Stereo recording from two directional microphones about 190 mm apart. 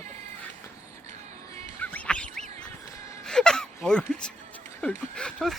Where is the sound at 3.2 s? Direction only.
5° left (ahead or behind).